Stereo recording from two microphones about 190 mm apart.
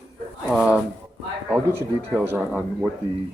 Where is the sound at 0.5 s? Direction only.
5° right (ahead or behind).